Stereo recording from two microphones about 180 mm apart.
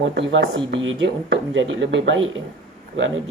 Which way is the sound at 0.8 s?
90° right.